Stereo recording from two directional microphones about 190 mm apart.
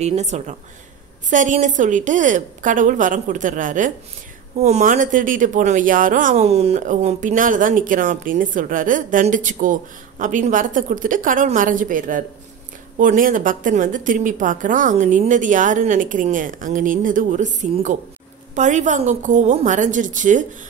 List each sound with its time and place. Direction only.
0.0 s a woman's voice: 35° right (ahead or behind)